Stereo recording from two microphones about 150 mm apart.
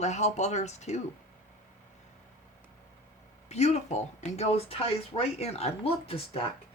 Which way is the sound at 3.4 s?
45° left (ahead or behind).